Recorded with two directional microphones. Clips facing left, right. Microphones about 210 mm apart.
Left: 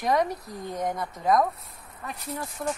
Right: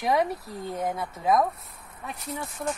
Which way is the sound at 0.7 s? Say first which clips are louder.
Left 1 dB; 5° right (ahead or behind).